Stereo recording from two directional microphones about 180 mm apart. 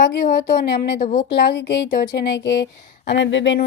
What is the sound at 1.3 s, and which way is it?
A woman's voice, 65° left (ahead or behind).